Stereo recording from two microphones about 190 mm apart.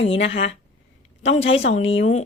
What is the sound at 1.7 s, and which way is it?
Speech, 35° left (ahead or behind).